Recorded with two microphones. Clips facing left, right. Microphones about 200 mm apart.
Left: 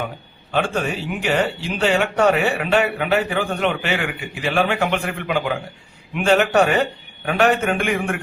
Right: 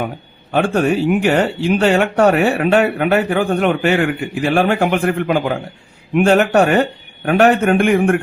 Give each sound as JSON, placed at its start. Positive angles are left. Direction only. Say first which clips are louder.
{"t": 0.5, "sound": "a man's voice", "louder": "right 7 dB", "side_deg": -55}